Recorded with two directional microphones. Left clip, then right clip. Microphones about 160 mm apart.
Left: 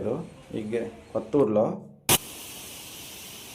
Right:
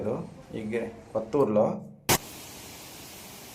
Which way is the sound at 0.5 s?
15° left (ahead or behind).